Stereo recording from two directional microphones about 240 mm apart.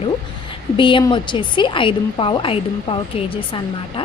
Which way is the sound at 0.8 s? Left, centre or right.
Centre.